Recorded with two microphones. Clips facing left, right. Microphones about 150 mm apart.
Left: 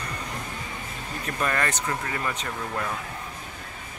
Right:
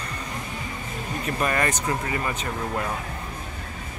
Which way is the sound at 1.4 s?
15° right (ahead or behind).